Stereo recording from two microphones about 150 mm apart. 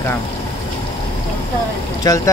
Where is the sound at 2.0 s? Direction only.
20° left (ahead or behind).